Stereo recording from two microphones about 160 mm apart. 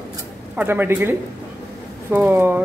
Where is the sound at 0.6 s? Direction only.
15° right (ahead or behind).